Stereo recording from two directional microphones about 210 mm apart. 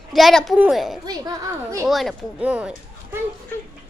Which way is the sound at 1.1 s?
20° right (ahead or behind).